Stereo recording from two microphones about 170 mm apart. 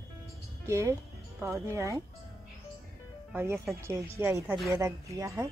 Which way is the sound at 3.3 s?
15° right (ahead or behind).